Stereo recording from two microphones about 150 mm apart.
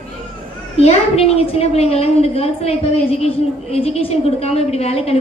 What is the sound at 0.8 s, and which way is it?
A woman's voice, 45° left (ahead or behind).